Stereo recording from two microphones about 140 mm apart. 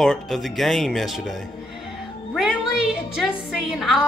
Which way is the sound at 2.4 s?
5° right (ahead or behind).